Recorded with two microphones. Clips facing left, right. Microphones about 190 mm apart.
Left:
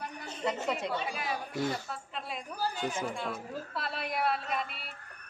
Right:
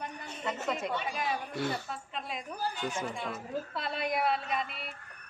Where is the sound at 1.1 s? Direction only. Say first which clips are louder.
Right 1 dB; 5° left (ahead or behind).